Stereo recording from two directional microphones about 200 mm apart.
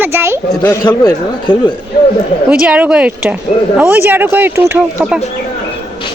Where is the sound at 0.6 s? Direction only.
20° left (ahead or behind).